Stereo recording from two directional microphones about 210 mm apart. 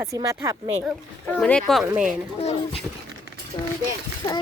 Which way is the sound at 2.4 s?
30° left (ahead or behind).